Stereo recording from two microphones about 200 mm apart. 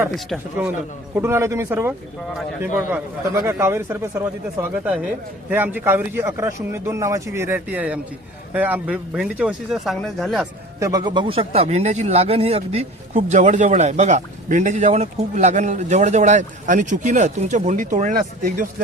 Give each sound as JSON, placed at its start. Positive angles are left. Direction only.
{"t": 0.1, "sound": "speech", "side_deg": 0}
{"t": 1.1, "sound": "a man's voice", "side_deg": -15}
{"t": 3.3, "sound": "a man's voice", "side_deg": -15}
{"t": 10.8, "sound": "speech", "side_deg": -15}